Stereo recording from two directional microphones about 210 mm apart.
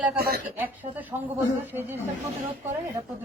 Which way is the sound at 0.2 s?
45° right (ahead or behind).